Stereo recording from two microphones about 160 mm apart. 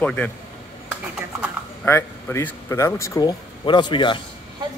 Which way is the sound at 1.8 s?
15° left (ahead or behind).